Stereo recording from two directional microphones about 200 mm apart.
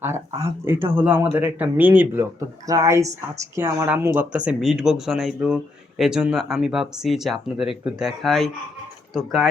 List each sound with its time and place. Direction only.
0.6 s speech: 10° right (ahead or behind)